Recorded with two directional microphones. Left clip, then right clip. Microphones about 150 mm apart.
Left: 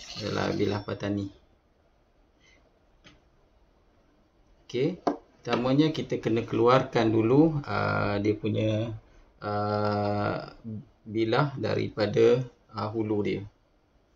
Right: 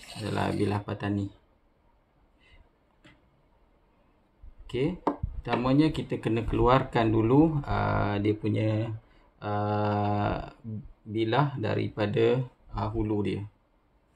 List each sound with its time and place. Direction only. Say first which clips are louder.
0.1 s speech: left 1 dB; 15° right (ahead or behind)
4.6 s speech: left 1 dB; 15° right (ahead or behind)
8.4 s speech: left 1 dB; 40° right (ahead or behind)
9.4 s speech: left 1 dB; 15° right (ahead or behind)